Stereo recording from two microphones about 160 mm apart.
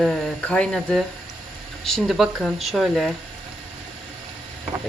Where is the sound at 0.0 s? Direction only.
5° left (ahead or behind).